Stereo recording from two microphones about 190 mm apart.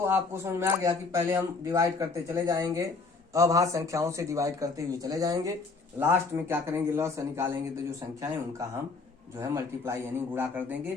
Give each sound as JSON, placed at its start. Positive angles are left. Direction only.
{"t": 0.0, "sound": "speech", "side_deg": -15}
{"t": 9.4, "sound": "speech", "side_deg": -15}